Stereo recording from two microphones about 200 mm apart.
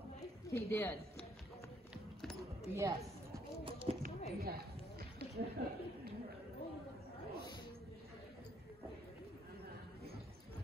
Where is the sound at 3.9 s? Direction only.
30° right (ahead or behind).